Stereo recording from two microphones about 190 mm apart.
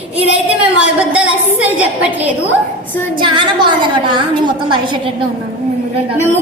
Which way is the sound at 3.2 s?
25° right (ahead or behind).